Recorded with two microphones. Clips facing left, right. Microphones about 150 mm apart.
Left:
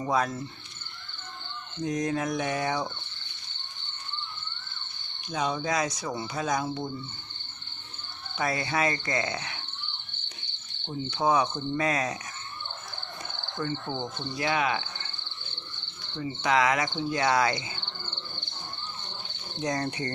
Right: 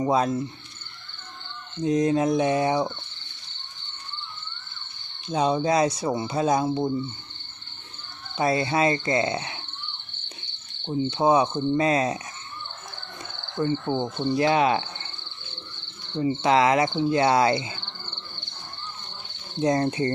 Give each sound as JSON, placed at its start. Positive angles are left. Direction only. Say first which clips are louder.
{"t": 0.0, "sound": "speech", "louder": "right 5 dB", "side_deg": -25}
{"t": 1.8, "sound": "speech", "louder": "right 7 dB", "side_deg": -25}
{"t": 5.3, "sound": "speech", "louder": "right 7 dB", "side_deg": -30}
{"t": 8.4, "sound": "speech", "louder": "right 6 dB", "side_deg": -25}
{"t": 11.1, "sound": "speech", "louder": "right 4 dB", "side_deg": -25}
{"t": 13.6, "sound": "speech", "louder": "right 7 dB", "side_deg": -25}
{"t": 16.1, "sound": "speech", "louder": "right 5 dB", "side_deg": -30}
{"t": 19.6, "sound": "speech", "louder": "right 8 dB", "side_deg": -25}